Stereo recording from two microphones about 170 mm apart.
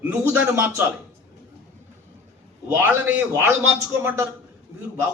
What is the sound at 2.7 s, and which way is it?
A man's voice, 10° right (ahead or behind).